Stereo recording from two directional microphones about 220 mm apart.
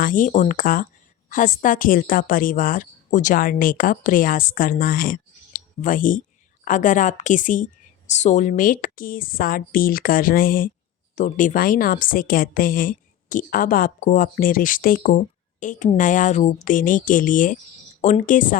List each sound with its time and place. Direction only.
0.0 s speech: 35° left (ahead or behind)